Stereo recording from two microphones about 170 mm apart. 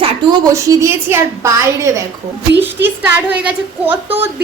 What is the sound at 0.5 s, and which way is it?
A woman's voice, 15° right (ahead or behind).